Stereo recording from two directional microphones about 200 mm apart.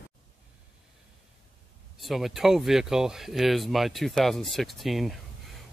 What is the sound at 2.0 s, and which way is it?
Speech, centre (ahead or behind).